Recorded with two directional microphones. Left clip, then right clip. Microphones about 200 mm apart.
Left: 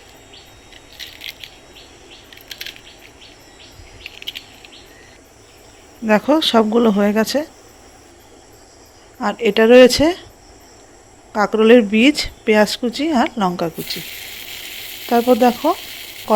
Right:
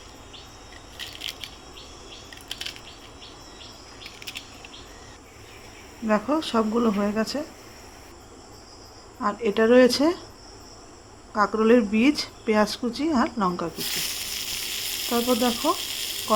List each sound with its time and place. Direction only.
1.3 s a sound: 20° right (ahead or behind)
6.1 s speech: 25° left (ahead or behind)
9.2 s speech: 25° left (ahead or behind)
11.3 s speech: 20° left (ahead or behind)
15.1 s speech: 20° left (ahead or behind)